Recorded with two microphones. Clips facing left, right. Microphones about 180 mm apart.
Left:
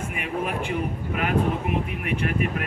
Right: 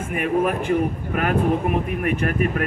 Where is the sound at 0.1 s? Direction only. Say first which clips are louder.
Right 10 dB; 50° right (ahead or behind).